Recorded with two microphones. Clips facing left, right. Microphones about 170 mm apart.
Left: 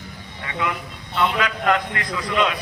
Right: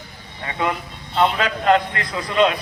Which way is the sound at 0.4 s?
35° right (ahead or behind).